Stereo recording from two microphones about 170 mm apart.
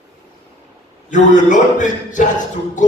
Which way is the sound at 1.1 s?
45° left (ahead or behind).